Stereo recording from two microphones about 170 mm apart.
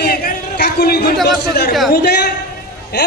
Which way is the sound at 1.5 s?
70° left (ahead or behind).